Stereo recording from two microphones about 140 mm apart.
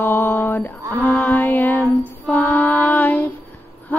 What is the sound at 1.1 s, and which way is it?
Music, 10° left (ahead or behind).